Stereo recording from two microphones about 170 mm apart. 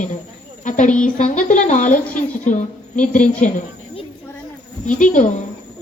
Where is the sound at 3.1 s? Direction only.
45° left (ahead or behind).